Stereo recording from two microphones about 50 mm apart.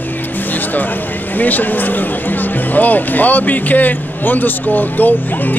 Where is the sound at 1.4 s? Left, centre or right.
Left.